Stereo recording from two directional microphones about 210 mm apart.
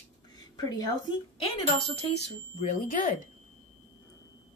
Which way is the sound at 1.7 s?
35° left (ahead or behind).